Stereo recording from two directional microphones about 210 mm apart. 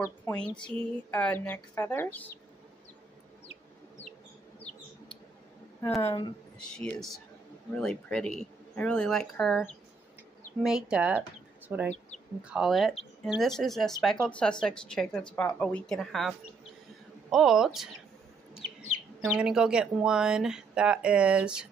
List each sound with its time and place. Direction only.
0.0 s speech: 10° left (ahead or behind)
6.0 s speech: 20° left (ahead or behind)
6.7 s speech: 5° left (ahead or behind)
19.3 s speech: 5° right (ahead or behind)